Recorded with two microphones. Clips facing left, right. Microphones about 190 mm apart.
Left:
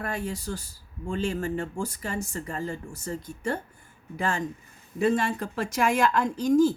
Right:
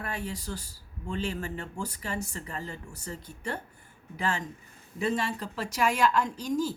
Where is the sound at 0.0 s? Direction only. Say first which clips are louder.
Left 4 dB; 45° left (ahead or behind).